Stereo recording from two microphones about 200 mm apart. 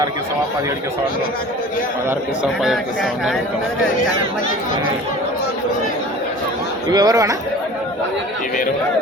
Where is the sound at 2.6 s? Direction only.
Centre (ahead or behind).